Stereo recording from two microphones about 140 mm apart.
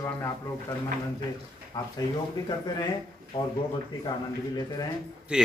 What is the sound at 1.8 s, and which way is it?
Speech, 25° left (ahead or behind).